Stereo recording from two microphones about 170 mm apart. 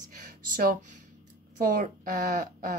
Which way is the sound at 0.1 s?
55° right (ahead or behind).